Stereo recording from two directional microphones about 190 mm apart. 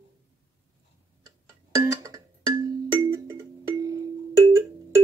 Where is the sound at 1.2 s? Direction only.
20° right (ahead or behind).